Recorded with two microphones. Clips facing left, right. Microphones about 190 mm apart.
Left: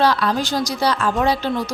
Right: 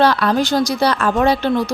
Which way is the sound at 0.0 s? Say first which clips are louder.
Right 3 dB; 60° right (ahead or behind).